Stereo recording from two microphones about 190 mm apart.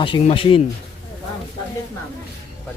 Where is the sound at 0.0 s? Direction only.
25° left (ahead or behind).